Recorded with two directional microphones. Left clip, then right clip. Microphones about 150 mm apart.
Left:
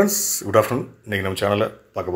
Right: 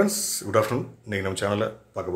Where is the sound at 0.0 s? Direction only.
20° left (ahead or behind).